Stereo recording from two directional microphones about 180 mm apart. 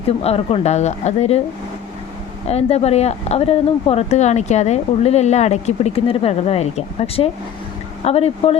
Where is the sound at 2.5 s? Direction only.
35° left (ahead or behind).